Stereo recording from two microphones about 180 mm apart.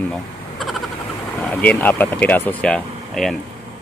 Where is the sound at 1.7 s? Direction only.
10° left (ahead or behind).